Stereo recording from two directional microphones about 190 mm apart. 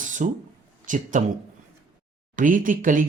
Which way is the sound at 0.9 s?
40° right (ahead or behind).